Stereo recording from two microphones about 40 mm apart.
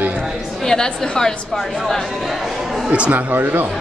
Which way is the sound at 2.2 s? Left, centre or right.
Centre.